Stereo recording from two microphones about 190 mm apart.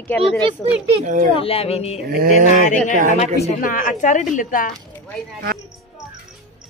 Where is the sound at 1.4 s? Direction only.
30° left (ahead or behind).